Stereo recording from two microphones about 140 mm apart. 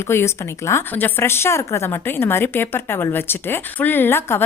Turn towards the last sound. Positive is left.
turn(degrees=15)  # may be behind; listen again after turning